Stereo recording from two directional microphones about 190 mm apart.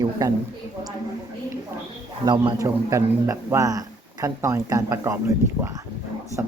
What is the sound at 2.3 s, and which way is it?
A man's voice, 20° right (ahead or behind).